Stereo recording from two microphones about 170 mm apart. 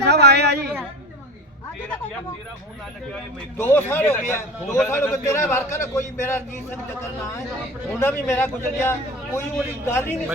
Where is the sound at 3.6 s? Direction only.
15° left (ahead or behind).